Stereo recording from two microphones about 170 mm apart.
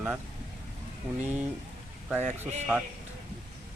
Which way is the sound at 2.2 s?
40° right (ahead or behind).